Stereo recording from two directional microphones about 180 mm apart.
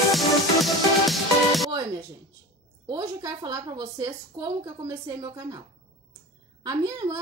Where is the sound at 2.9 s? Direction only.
20° right (ahead or behind).